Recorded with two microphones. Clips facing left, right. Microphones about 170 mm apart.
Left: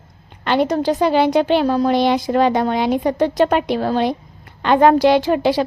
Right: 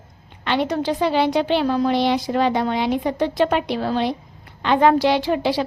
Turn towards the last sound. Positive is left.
turn(degrees=50)  # may be behind; listen again after turning